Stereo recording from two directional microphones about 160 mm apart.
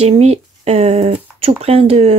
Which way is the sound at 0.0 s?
40° right (ahead or behind).